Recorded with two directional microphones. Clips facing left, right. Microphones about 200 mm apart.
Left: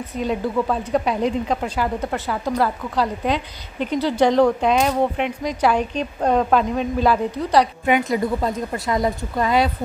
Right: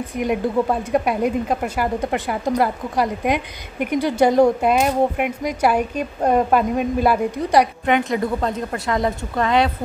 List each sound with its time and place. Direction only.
0.1 s speech: 15° right (ahead or behind)
8.1 s speech: centre (ahead or behind)